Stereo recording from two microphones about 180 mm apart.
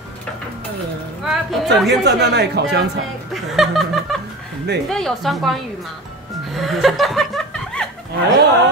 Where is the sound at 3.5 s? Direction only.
Centre (ahead or behind).